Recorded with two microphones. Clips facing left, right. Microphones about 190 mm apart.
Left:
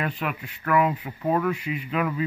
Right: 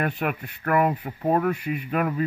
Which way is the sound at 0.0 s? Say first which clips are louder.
Right 3 dB; 45° right (ahead or behind).